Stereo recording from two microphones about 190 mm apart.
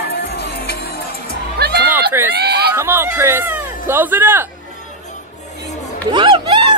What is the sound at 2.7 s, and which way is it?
Speech, 15° right (ahead or behind).